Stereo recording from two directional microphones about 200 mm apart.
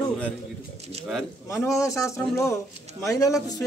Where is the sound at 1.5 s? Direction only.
15° left (ahead or behind).